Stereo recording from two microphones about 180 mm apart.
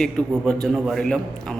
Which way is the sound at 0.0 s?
Centre (ahead or behind).